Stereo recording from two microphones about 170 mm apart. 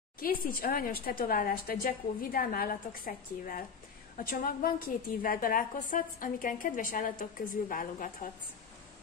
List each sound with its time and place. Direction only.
0.2 s a woman's voice: 60° left (ahead or behind)